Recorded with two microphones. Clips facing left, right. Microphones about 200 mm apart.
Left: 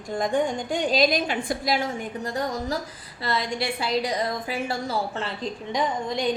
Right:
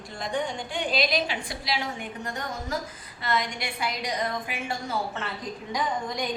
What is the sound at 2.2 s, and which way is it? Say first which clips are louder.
A woman's voice: left 8 dB; 35° left (ahead or behind).